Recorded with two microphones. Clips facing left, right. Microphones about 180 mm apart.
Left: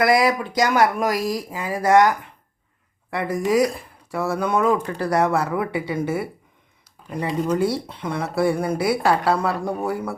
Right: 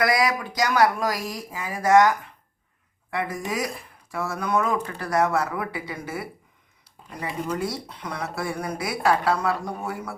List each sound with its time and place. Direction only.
0.0 s speech: 25° left (ahead or behind)
7.5 s speech: 30° left (ahead or behind)